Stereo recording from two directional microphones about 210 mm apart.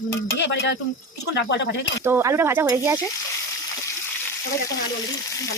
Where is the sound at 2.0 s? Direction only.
15° right (ahead or behind).